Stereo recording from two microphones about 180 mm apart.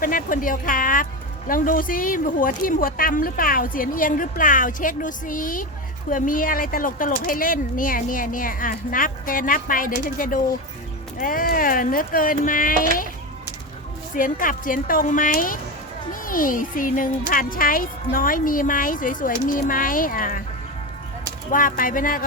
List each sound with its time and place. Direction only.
0.0 s speech: 50° left (ahead or behind)
14.2 s speech: 50° left (ahead or behind)
21.5 s speech: 50° left (ahead or behind)